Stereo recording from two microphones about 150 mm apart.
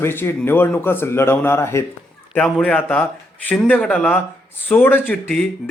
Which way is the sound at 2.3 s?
5° left (ahead or behind).